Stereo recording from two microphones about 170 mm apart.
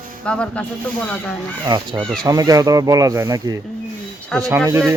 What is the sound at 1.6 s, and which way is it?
Speech, 25° right (ahead or behind).